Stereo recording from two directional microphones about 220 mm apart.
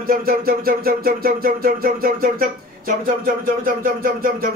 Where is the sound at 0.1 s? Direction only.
40° right (ahead or behind).